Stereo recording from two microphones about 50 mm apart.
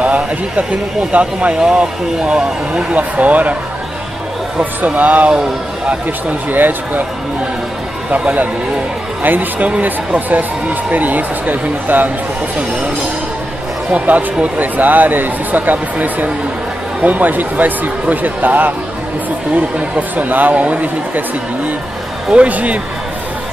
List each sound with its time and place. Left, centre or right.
0.0 s speech: right
1.6 s speech: centre
3.0 s speech: right
4.8 s speech: right
6.5 s speech: right
9.2 s speech: right
13.9 s speech: right
22.3 s speech: right